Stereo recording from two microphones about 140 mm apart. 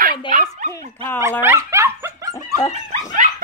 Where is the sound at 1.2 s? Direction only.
15° right (ahead or behind).